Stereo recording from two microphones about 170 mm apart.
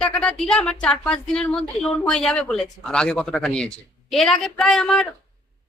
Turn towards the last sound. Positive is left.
turn(degrees=5)  # may be behind; listen again after turning